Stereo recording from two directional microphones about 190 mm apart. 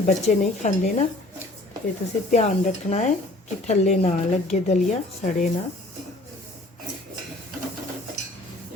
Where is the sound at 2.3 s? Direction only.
40° left (ahead or behind).